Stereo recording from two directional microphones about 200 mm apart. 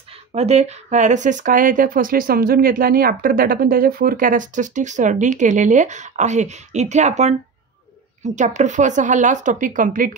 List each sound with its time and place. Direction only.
0.3 s speech: 30° right (ahead or behind)